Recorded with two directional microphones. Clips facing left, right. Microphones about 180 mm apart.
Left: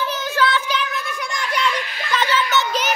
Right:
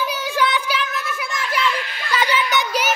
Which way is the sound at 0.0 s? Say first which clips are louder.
Even; 10° right (ahead or behind).